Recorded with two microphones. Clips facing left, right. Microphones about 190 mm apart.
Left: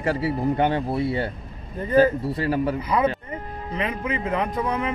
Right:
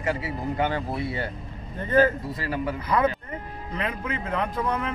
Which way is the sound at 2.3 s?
35° left (ahead or behind).